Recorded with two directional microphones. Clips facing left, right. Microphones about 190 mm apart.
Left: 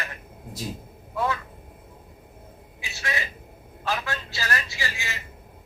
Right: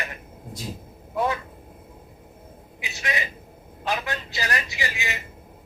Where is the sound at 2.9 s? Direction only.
15° right (ahead or behind).